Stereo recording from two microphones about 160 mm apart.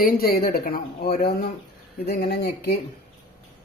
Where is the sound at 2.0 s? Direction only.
85° left.